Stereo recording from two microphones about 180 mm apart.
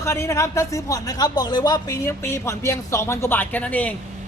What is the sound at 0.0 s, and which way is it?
A man's voice, 15° left (ahead or behind).